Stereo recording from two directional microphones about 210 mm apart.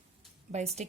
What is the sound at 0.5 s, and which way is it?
Speech, 30° right (ahead or behind).